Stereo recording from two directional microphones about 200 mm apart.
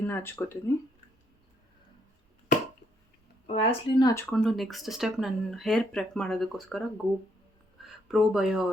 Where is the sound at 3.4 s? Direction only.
30° left (ahead or behind); by 4.4 s 15° left (ahead or behind).